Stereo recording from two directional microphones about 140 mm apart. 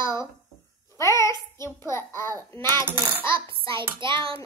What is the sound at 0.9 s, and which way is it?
Babbling, 20° left (ahead or behind).